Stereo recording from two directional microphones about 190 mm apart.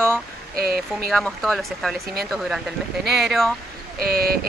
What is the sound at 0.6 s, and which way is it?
Speech, 55° right (ahead or behind).